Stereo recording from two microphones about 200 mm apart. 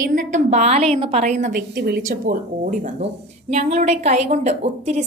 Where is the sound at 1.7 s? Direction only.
55° right (ahead or behind).